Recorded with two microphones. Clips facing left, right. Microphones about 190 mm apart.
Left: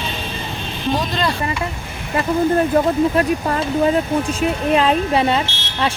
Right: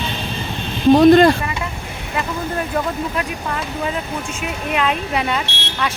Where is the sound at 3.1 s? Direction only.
40° left (ahead or behind).